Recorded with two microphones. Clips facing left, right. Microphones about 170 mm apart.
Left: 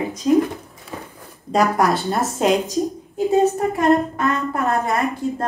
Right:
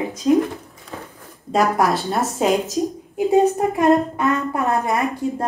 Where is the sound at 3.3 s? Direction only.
15° right (ahead or behind).